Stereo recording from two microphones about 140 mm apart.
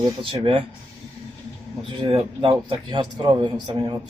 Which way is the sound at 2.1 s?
35° right (ahead or behind).